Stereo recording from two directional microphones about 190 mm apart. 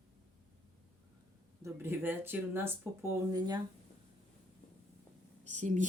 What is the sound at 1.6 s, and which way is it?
Speech, 10° right (ahead or behind).